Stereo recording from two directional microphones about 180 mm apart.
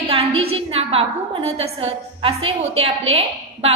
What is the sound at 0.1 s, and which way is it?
A woman's voice, 35° right (ahead or behind).